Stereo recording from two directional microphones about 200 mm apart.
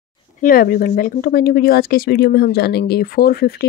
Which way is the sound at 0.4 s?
45° left (ahead or behind).